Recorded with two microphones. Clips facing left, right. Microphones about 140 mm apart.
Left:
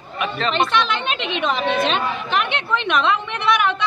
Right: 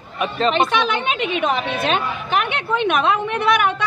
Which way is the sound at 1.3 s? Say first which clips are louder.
Left 4 dB; 45° right (ahead or behind).